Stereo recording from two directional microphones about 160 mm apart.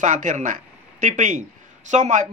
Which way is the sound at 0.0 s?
50° right (ahead or behind).